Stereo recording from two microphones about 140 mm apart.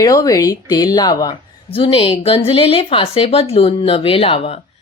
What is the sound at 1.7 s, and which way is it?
A woman's voice, 40° left (ahead or behind).